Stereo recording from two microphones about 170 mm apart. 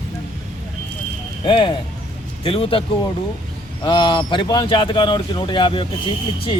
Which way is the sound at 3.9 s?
30° left (ahead or behind).